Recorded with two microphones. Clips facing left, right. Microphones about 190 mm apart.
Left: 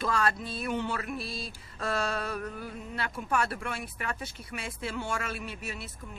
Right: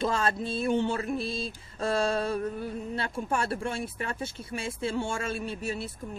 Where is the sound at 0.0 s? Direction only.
25° right (ahead or behind).